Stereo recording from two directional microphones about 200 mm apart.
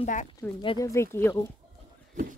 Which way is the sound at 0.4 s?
20° left (ahead or behind).